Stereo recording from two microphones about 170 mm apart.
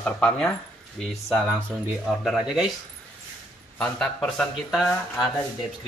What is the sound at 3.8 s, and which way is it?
Speech, 5° left (ahead or behind).